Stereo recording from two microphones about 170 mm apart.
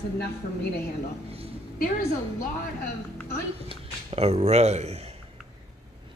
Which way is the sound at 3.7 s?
35° right (ahead or behind).